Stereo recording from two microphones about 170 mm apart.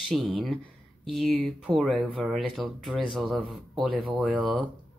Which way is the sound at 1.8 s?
Centre (ahead or behind).